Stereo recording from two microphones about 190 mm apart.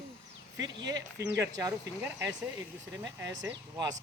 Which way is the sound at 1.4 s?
15° right (ahead or behind).